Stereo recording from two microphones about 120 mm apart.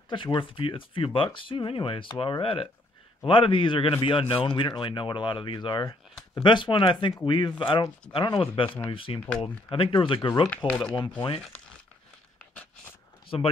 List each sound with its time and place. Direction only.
0.1 s a man's voice: 45° left (ahead or behind)
8.6 s speech: 15° left (ahead or behind)
8.9 s a man's voice: 50° left (ahead or behind)
10.7 s speech: 5° left (ahead or behind)
13.3 s a man's voice: 55° left (ahead or behind)